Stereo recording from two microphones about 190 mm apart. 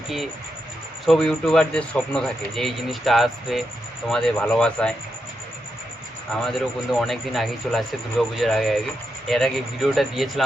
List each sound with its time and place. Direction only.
1.0 s speech: centre (ahead or behind)
6.3 s speech: centre (ahead or behind)